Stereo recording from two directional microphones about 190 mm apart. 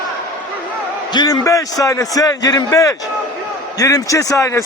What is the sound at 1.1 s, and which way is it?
A man's voice, 20° left (ahead or behind).